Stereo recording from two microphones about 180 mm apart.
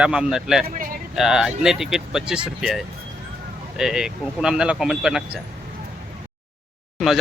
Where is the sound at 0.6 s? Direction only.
50° right (ahead or behind).